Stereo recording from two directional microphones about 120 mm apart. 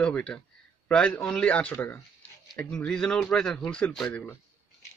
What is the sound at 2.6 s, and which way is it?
Speech, 5° left (ahead or behind).